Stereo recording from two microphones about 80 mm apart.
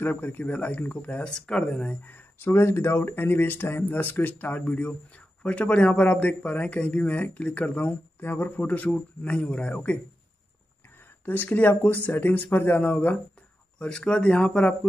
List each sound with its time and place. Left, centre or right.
0.0 s speech: left
2.0 s speech: left
11.2 s speech: left